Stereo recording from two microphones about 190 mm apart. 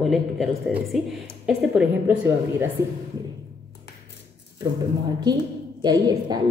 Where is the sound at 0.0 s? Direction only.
Centre (ahead or behind).